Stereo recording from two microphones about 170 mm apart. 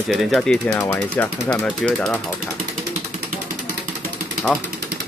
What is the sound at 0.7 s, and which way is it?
Speech, 15° left (ahead or behind).